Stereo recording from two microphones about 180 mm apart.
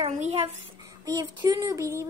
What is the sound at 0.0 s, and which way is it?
Speech, 40° right (ahead or behind).